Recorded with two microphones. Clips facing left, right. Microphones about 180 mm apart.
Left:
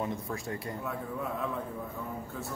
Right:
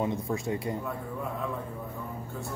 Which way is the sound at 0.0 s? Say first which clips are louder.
Right 5 dB; 20° right (ahead or behind).